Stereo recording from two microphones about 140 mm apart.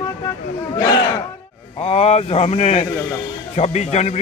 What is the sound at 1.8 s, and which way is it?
A man's voice, 50° left (ahead or behind).